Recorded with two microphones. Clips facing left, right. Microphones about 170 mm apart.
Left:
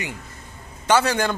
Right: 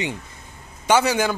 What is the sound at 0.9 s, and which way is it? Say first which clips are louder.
Speech: right 1 dB; 10° right (ahead or behind).